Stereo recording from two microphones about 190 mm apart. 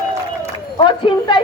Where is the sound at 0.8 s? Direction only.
25° left (ahead or behind).